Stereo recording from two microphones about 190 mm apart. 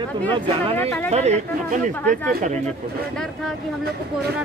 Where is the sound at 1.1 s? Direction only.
35° right (ahead or behind).